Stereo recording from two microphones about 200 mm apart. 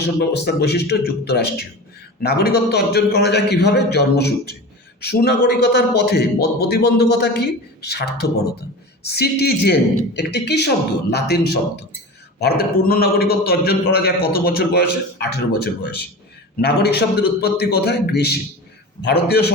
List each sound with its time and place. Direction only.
0.2 s a man's voice: 55° left (ahead or behind)
12.4 s a man's voice: 50° left (ahead or behind)